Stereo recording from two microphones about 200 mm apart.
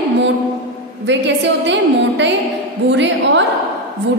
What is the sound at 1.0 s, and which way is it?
A woman's voice, 65° right (ahead or behind).